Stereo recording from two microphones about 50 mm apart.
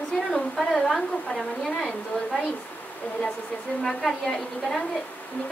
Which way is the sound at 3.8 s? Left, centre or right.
Centre.